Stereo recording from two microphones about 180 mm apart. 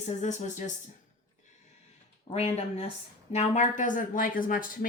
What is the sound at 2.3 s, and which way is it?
A woman's voice, 35° left (ahead or behind).